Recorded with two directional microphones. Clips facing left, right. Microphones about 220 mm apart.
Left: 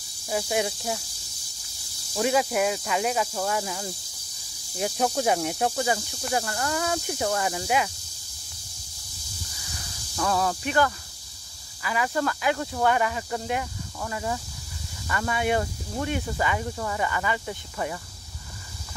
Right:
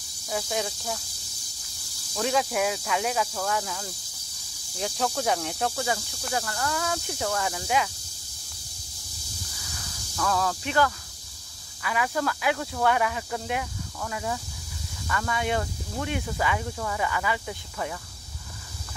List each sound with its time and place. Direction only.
0.3 s speech: 10° left (ahead or behind)
2.2 s speech: 5° left (ahead or behind)
4.7 s speech: 10° left (ahead or behind)
6.4 s speech: 20° left (ahead or behind)
7.1 s speech: 10° left (ahead or behind)
10.1 s speech: 15° left (ahead or behind)